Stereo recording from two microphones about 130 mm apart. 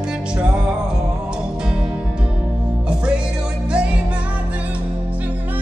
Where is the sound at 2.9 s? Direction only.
5° right (ahead or behind).